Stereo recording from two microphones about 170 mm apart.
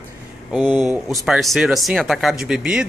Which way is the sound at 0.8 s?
Centre (ahead or behind).